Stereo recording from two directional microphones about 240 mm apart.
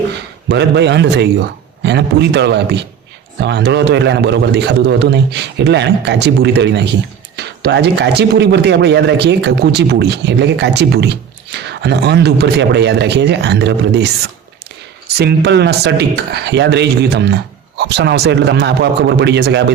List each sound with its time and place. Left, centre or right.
0.4 s a man's voice: right
15.2 s a man's voice: right